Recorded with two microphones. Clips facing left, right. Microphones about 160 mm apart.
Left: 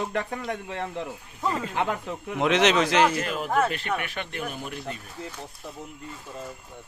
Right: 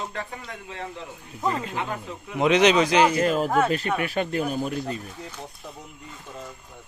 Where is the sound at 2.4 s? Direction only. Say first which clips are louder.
Right 3 dB; centre (ahead or behind).